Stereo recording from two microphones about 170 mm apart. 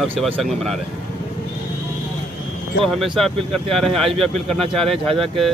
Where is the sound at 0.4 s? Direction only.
Centre (ahead or behind).